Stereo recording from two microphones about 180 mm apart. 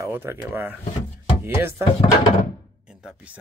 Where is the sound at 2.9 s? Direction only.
5° right (ahead or behind).